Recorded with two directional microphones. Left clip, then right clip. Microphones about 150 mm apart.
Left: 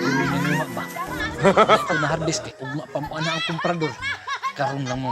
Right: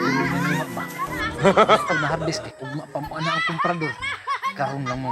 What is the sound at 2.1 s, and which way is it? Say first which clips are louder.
Speech: left 1 dB; 10° left (ahead or behind).